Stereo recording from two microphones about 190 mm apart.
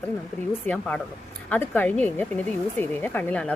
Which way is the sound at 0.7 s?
5° left (ahead or behind).